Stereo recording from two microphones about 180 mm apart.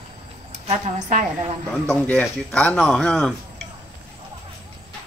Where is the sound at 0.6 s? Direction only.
40° right (ahead or behind).